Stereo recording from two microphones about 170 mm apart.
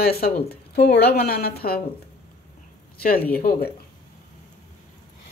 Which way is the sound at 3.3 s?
55° left (ahead or behind).